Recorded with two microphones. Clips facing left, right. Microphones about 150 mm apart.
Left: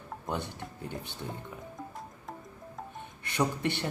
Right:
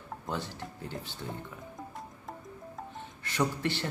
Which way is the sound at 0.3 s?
20° left (ahead or behind).